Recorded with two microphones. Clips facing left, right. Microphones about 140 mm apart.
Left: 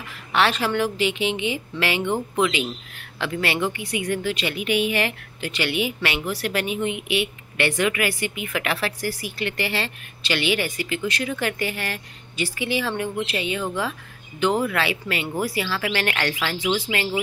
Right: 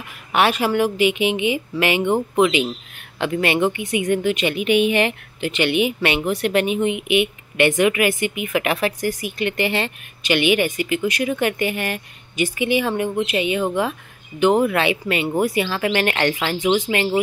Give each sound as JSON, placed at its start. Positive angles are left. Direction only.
{"t": 0.1, "sound": "a woman's voice", "side_deg": -15}